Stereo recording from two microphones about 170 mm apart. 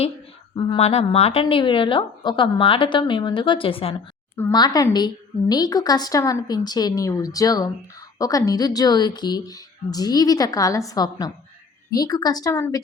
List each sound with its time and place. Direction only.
0.5 s a woman's voice: 25° left (ahead or behind)
0.8 s a woman's voice: 40° left (ahead or behind)
4.5 s a woman's voice: 25° left (ahead or behind)